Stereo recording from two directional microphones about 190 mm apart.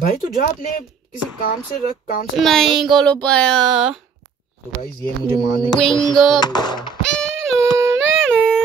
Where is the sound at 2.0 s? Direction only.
50° left (ahead or behind).